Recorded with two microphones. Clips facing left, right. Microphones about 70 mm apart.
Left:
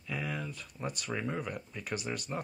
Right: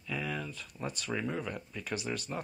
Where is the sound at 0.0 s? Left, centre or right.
Left.